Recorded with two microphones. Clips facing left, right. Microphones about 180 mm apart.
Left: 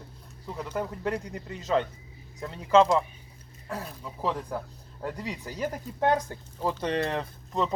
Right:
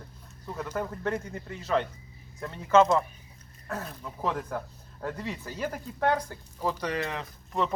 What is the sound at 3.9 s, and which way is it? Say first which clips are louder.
Speech: left 2 dB; 5° left (ahead or behind).